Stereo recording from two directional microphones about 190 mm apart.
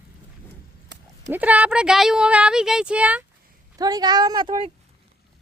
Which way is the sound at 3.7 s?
20° right (ahead or behind).